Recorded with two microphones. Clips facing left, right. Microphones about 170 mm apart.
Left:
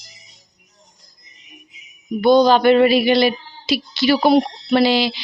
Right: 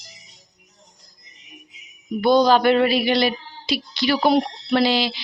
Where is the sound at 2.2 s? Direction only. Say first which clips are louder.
Left 3 dB; centre (ahead or behind).